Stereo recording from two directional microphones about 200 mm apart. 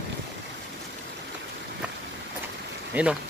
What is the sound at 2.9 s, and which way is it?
Speech, 10° right (ahead or behind).